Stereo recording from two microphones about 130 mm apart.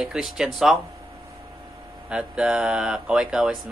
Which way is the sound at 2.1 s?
10° right (ahead or behind).